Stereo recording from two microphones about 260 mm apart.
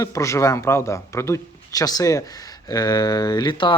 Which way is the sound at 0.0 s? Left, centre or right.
Centre.